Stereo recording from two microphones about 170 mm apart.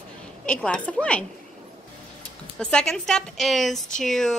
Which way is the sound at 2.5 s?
5° left (ahead or behind).